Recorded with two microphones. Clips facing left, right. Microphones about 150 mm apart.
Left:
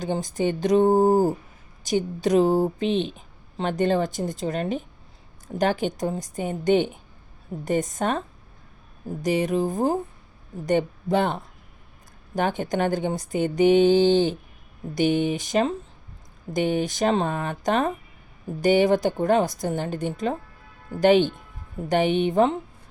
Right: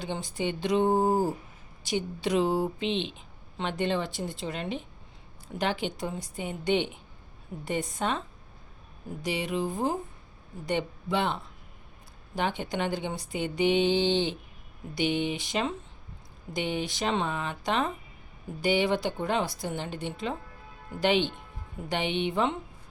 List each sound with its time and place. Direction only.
0.0 s speech: 45° left (ahead or behind)
9.2 s speech: 45° left (ahead or behind)